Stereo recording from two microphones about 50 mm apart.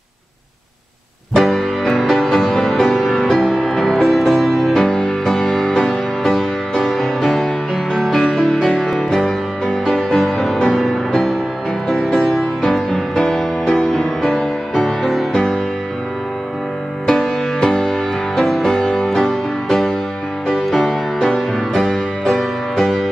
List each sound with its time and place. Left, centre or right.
1.3 s music: centre
4.7 s music: centre
17.0 s music: centre